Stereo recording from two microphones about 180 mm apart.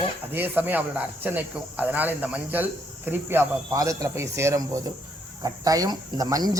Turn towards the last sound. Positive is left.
turn(degrees=-20)  # may be behind; listen again after turning